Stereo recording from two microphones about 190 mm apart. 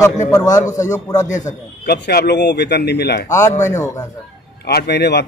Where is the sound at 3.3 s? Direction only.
15° left (ahead or behind).